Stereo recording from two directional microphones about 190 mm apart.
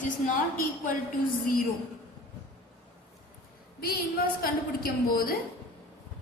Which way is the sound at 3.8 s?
50° left (ahead or behind).